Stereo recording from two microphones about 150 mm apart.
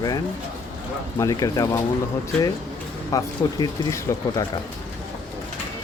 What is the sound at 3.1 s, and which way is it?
Speech, 25° left (ahead or behind).